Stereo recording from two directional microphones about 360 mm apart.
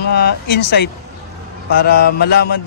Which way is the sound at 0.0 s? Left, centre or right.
Left.